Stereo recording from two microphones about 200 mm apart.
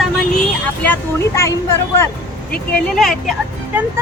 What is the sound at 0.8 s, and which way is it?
Speech, 10° left (ahead or behind).